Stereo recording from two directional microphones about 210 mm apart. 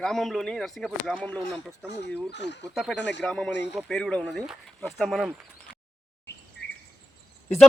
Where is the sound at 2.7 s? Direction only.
Centre (ahead or behind).